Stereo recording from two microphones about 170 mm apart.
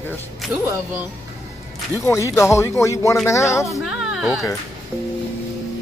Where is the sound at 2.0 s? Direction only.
15° left (ahead or behind).